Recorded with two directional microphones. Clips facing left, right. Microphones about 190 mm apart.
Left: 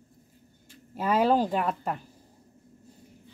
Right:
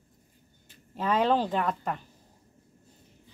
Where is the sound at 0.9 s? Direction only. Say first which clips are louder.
Left 2 dB; 10° left (ahead or behind).